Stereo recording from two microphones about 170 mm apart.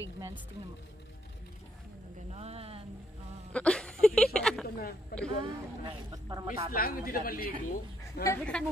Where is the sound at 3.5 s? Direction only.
5° left (ahead or behind).